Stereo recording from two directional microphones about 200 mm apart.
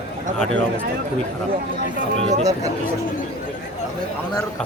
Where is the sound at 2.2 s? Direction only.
30° right (ahead or behind).